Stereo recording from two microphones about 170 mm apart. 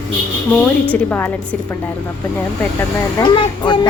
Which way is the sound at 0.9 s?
10° left (ahead or behind).